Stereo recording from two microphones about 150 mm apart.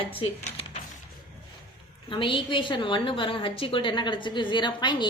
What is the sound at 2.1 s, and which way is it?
A woman's voice, 35° left (ahead or behind).